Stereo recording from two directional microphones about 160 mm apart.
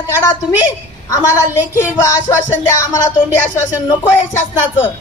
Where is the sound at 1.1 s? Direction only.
20° left (ahead or behind).